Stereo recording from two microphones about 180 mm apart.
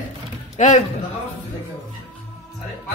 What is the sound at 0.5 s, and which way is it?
Speech, 40° left (ahead or behind).